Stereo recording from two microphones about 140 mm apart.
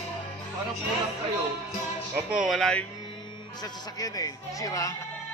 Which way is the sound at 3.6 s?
25° left (ahead or behind).